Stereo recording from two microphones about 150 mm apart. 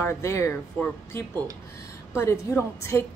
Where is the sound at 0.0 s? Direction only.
15° left (ahead or behind).